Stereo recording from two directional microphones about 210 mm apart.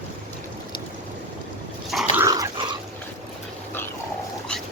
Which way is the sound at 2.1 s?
15° right (ahead or behind).